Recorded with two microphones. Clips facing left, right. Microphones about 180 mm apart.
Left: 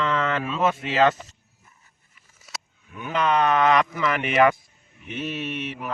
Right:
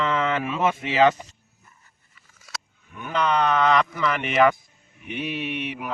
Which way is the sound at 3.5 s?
15° left (ahead or behind).